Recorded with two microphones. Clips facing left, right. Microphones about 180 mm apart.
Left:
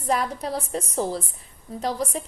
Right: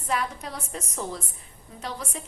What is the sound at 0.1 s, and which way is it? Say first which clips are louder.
A woman's voice: left 5 dB; 35° left (ahead or behind).